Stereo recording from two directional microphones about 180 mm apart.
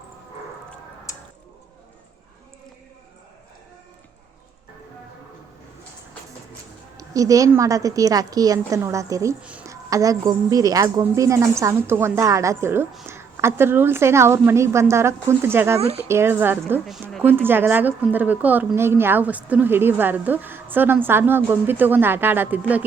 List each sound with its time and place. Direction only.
6.9 s a woman's voice: 20° right (ahead or behind)
9.4 s a sound: 5° right (ahead or behind)
9.9 s a woman's voice: 20° right (ahead or behind)
15.8 s speech: 35° right (ahead or behind)
16.0 s a woman's voice: 15° right (ahead or behind)
16.8 s speech: centre (ahead or behind)
17.2 s a woman's voice: 10° right (ahead or behind)